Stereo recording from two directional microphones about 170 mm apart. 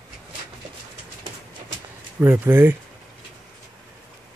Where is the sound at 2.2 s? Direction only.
10° right (ahead or behind).